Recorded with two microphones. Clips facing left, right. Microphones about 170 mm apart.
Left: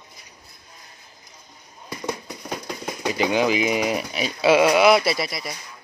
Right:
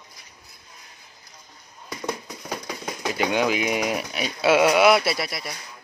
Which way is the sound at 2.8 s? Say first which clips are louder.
Left 2 dB; 5° left (ahead or behind).